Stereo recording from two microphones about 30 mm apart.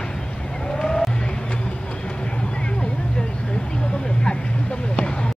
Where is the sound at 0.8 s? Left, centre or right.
Centre.